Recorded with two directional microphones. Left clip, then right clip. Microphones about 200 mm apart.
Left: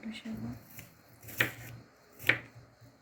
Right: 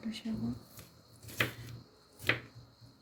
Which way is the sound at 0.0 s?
40° right (ahead or behind).